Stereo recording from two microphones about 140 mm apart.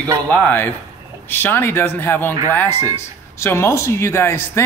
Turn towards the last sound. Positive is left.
turn(degrees=15)  # may be behind; listen again after turning